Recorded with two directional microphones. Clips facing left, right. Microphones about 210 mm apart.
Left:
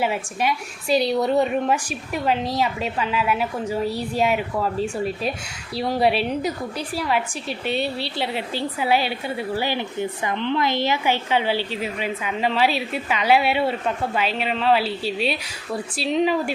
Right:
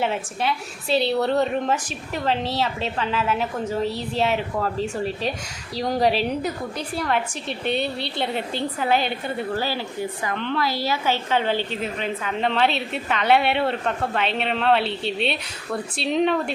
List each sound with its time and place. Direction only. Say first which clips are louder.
0.0 s a woman's voice: left 1 dB; 10° left (ahead or behind)
0.9 s a woman's voice: left 2 dB; 30° right (ahead or behind)
1.2 s a woman's voice: left 1 dB; 10° left (ahead or behind)
9.6 s a woman's voice: left 2 dB; 20° left (ahead or behind); by 16.4 s centre (ahead or behind)